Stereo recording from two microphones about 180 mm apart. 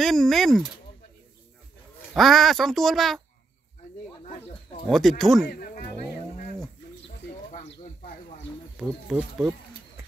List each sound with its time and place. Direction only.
0.0 s a child's voice: centre (ahead or behind)
2.0 s a child's voice: centre (ahead or behind)
4.8 s a child's voice: centre (ahead or behind)
5.5 s music: 50° left (ahead or behind)
8.7 s a child's voice: centre (ahead or behind)